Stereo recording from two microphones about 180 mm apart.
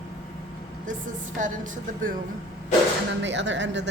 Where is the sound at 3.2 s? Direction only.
80° right.